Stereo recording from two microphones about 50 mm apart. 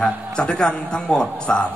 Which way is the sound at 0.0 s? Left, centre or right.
Centre.